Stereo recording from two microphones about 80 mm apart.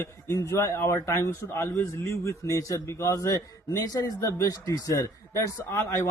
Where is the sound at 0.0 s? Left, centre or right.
Left.